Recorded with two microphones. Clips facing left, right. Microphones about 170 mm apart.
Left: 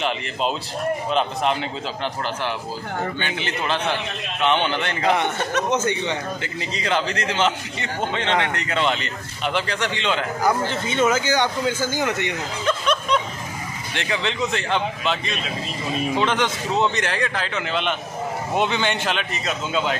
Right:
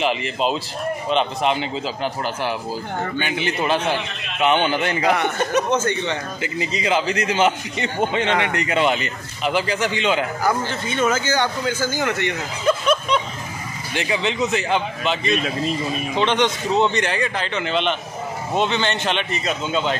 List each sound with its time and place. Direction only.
0.0 s a man's voice: 5° right (ahead or behind)
3.2 s a man's voice: 10° right (ahead or behind)
5.7 s speech: 15° left (ahead or behind)
6.4 s a man's voice: 5° right (ahead or behind)
10.9 s speech: 20° left (ahead or behind)
12.6 s snicker: 5° right (ahead or behind)
13.9 s a man's voice: 5° right (ahead or behind)